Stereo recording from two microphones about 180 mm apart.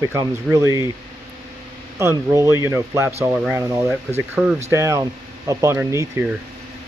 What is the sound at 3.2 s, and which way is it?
Speech, 5° right (ahead or behind).